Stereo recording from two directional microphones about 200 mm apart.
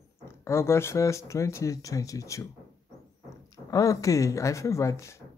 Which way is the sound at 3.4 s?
15° left (ahead or behind).